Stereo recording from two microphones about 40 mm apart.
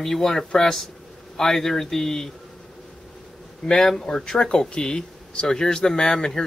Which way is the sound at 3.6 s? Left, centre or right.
Centre.